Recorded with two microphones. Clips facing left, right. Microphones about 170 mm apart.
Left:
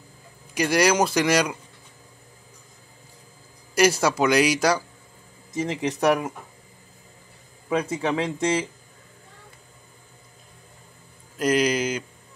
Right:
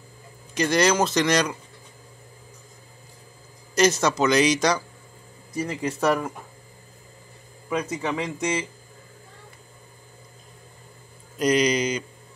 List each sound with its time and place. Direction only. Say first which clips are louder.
0.6 s speech: left 1 dB; 10° left (ahead or behind)
3.7 s speech: left 1 dB; 10° left (ahead or behind)
5.5 s speech: left 2 dB; 20° left (ahead or behind)
7.7 s speech: left 3 dB; 30° left (ahead or behind)
11.3 s speech: right 1 dB; 5° left (ahead or behind)